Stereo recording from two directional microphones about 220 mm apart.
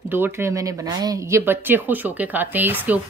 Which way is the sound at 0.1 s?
10° right (ahead or behind).